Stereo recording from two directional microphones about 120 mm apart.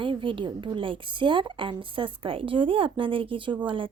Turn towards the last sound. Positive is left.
turn(degrees=-45)  # may be behind; listen again after turning